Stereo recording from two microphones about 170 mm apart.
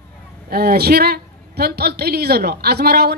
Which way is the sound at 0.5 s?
65° right (ahead or behind).